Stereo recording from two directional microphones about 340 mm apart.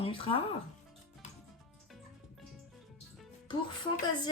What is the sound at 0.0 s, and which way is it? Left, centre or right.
Speech, centre.